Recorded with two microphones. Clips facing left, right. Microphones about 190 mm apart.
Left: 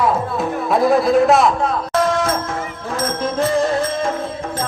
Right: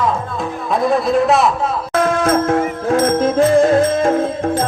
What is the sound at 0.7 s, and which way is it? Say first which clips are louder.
Speech: left 1 dB; 5° left (ahead or behind).